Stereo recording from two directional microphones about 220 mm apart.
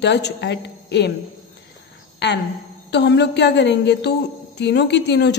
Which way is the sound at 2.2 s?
50° left (ahead or behind).